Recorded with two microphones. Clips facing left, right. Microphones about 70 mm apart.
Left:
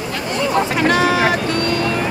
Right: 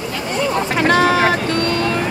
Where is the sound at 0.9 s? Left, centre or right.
Right.